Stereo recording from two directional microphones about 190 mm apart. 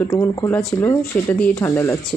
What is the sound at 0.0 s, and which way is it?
Speech, 10° left (ahead or behind).